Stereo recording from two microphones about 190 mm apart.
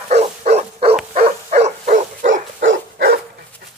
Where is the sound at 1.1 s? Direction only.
40° right (ahead or behind).